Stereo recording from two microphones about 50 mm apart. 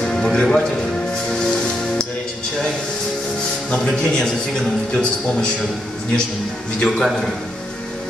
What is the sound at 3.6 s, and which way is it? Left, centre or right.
Speech, centre.